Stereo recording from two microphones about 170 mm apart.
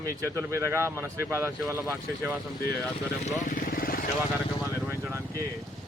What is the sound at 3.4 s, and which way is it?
Vehicle, 55° left (ahead or behind).